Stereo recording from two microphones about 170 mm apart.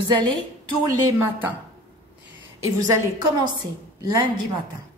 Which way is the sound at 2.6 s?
20° right (ahead or behind).